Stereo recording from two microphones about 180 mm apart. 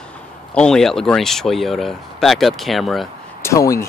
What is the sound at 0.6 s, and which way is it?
Speech, 5° left (ahead or behind).